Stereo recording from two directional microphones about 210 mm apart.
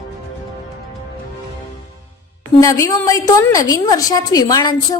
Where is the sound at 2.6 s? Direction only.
15° left (ahead or behind).